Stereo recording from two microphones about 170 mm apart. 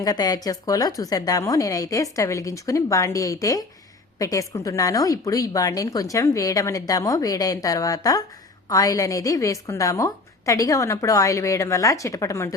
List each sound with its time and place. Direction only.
0.0 s a woman's voice: 20° left (ahead or behind)